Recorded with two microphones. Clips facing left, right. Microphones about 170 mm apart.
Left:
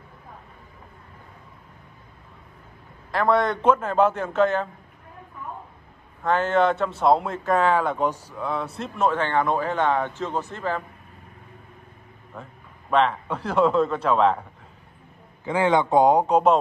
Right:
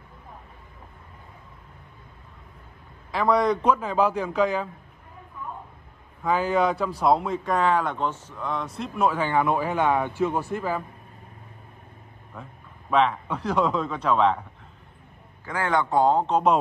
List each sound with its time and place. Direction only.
3.1 s speech: centre (ahead or behind)
6.2 s a man's voice: centre (ahead or behind)
12.9 s speech: centre (ahead or behind)
15.4 s a man's voice: 25° left (ahead or behind)